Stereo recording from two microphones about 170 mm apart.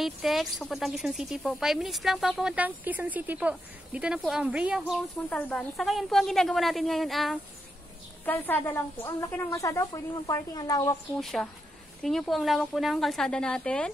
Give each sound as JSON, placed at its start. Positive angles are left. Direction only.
{"t": 0.0, "sound": "speech", "side_deg": 0}
{"t": 5.3, "sound": "speech", "side_deg": 10}
{"t": 8.3, "sound": "speech", "side_deg": 10}
{"t": 11.1, "sound": "speech", "side_deg": 0}